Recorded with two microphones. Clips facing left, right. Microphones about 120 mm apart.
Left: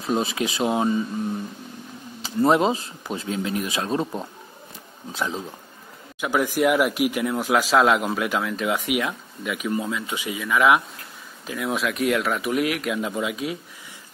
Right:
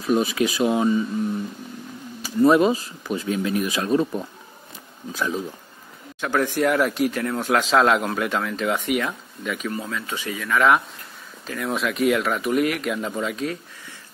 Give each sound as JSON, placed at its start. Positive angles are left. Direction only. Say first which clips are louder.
{"t": 0.0, "sound": "speech", "louder": "right 3 dB", "side_deg": 25}
{"t": 2.2, "sound": "speech", "louder": "right 3 dB", "side_deg": 25}
{"t": 6.2, "sound": "speech", "louder": "even", "side_deg": 10}
{"t": 9.7, "sound": "speech", "louder": "left 3 dB", "side_deg": 15}